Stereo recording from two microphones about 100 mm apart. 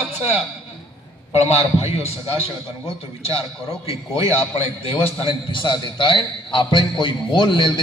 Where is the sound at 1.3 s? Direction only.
90° left.